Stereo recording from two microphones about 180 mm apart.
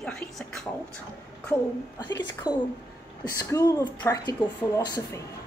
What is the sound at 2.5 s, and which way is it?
A woman's voice, 20° left (ahead or behind).